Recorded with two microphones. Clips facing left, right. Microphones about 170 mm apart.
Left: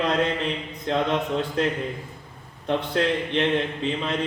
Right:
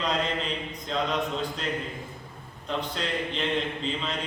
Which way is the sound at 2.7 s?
65° left (ahead or behind).